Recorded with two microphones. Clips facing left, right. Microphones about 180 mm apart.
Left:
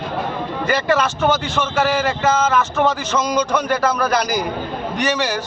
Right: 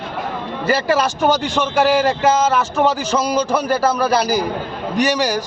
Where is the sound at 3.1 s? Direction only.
35° right (ahead or behind).